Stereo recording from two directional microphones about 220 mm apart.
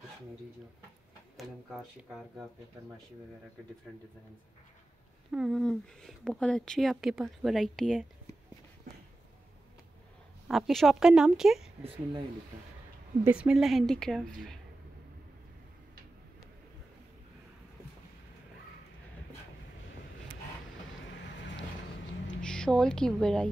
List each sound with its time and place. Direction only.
1.3 s speech: centre (ahead or behind)
5.3 s speech: centre (ahead or behind)
10.5 s speech: centre (ahead or behind)
13.2 s speech: 5° right (ahead or behind)
21.1 s vehicle: 55° left (ahead or behind)
22.4 s speech: 5° left (ahead or behind)